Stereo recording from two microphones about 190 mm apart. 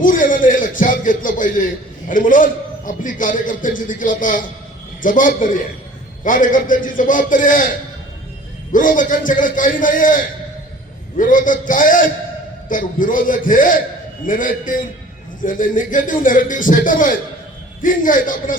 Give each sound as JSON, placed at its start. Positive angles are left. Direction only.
{"t": 0.0, "sound": "a man's voice", "side_deg": 45}
{"t": 8.7, "sound": "a man's voice", "side_deg": 45}